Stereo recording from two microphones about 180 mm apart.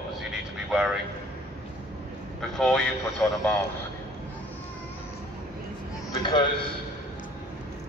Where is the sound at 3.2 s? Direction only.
10° left (ahead or behind).